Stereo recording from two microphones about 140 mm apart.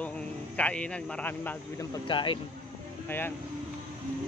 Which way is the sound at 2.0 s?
35° left (ahead or behind).